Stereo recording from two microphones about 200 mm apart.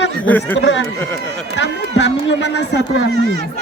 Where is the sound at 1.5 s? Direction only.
60° left (ahead or behind).